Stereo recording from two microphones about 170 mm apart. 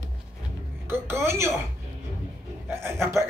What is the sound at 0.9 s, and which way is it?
Speech, 15° right (ahead or behind).